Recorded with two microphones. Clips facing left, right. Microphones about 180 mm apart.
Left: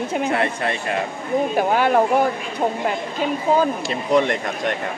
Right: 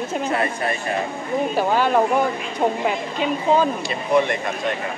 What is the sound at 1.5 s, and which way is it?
Speech, 10° left (ahead or behind).